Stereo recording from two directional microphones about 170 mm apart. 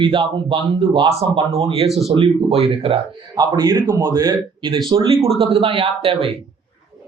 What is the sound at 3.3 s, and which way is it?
A man's voice, 20° right (ahead or behind).